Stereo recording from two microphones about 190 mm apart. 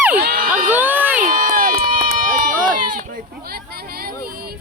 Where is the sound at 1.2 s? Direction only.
45° right (ahead or behind).